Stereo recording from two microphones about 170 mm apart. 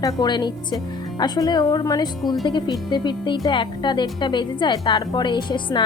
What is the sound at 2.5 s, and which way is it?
Speech, 25° left (ahead or behind).